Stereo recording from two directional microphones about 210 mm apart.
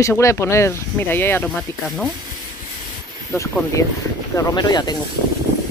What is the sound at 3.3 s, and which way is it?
Speech, 15° left (ahead or behind).